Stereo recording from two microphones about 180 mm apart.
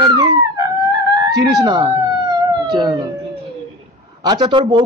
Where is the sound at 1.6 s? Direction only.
20° right (ahead or behind).